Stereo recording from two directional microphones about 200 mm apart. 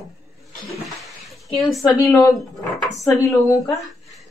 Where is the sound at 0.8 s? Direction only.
Centre (ahead or behind).